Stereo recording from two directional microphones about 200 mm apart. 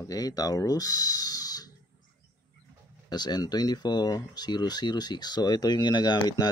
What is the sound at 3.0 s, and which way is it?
Speech, 20° left (ahead or behind).